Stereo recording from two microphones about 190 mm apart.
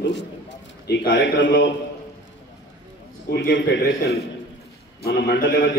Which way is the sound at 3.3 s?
60° left (ahead or behind).